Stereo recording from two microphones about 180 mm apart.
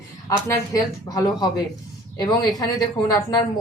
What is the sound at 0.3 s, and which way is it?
A woman's voice, 15° left (ahead or behind).